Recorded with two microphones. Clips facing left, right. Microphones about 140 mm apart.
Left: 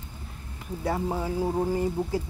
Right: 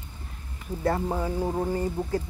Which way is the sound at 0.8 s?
Centre (ahead or behind).